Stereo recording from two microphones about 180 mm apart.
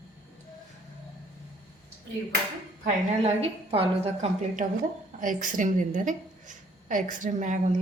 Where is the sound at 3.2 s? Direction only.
35° right (ahead or behind).